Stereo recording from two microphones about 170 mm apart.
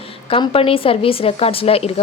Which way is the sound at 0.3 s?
30° left (ahead or behind).